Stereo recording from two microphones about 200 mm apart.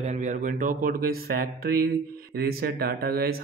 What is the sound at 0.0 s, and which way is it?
Speech, 35° right (ahead or behind).